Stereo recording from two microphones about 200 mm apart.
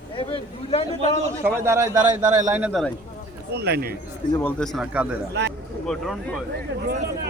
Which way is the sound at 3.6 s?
55° right (ahead or behind).